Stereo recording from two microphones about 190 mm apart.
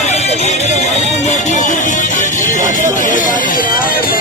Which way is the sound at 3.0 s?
45° left (ahead or behind).